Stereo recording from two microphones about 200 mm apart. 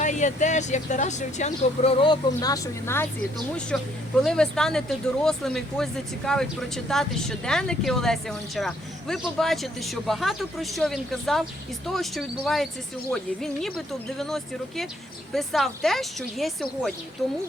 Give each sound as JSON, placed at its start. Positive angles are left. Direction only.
{"t": 0.0, "sound": "speech", "side_deg": 40}